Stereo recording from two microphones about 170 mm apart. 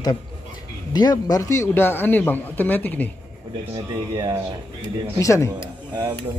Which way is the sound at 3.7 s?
25° right (ahead or behind).